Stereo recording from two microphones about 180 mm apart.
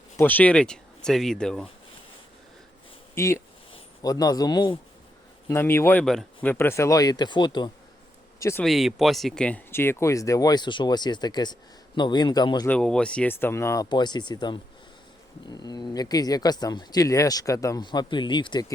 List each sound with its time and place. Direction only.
0.2 s speech: 10° left (ahead or behind)
3.2 s speech: 15° left (ahead or behind)
5.5 s speech: 15° left (ahead or behind)
8.6 s speech: centre (ahead or behind); by 12.6 s 20° left (ahead or behind)
12.6 s speech: 5° left (ahead or behind); by 18.6 s 25° left (ahead or behind)